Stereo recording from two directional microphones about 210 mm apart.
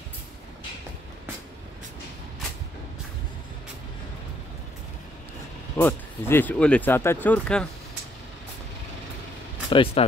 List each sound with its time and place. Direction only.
5.8 s speech: 10° left (ahead or behind)
9.7 s speech: 25° left (ahead or behind)